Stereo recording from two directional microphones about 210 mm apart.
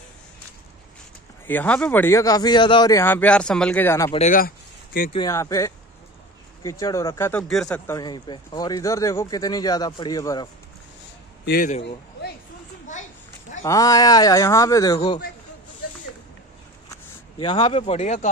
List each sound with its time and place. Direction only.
1.5 s speech: 5° left (ahead or behind)
4.1 s speech: 35° left (ahead or behind)
5.1 s speech: 15° left (ahead or behind)
11.4 s speech: 45° left (ahead or behind)
13.7 s speech: 15° left (ahead or behind)
17.4 s speech: 25° left (ahead or behind)